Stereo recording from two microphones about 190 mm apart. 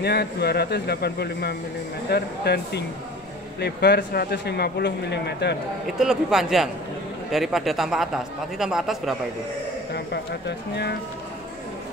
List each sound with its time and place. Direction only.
0.0 s a man's voice: 60° left (ahead or behind)
5.9 s speech: centre (ahead or behind)
10.7 s a man's voice: 60° left (ahead or behind)